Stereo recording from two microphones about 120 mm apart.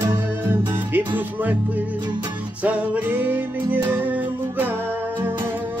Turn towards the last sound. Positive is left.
turn(degrees=-15)  # may be behind; listen again after turning